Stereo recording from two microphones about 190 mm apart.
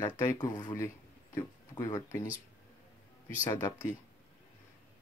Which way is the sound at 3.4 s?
15° left (ahead or behind).